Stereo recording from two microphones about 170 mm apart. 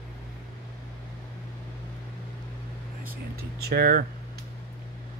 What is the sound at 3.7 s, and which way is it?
Speech, 60° right (ahead or behind).